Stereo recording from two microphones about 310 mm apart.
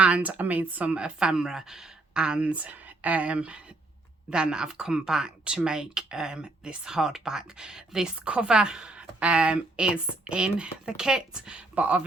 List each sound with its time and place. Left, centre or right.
0.0 s speech: centre